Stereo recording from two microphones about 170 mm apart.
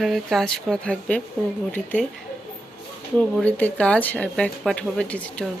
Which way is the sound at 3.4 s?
10° left (ahead or behind).